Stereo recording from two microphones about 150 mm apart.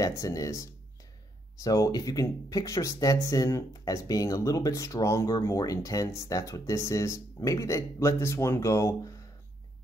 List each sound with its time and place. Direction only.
0.0 s speech: 20° left (ahead or behind)